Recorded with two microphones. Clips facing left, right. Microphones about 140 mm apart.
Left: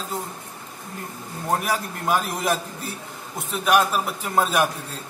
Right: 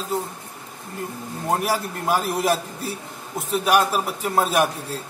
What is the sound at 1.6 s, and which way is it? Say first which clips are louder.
A man's voice: right 2 dB; 5° right (ahead or behind).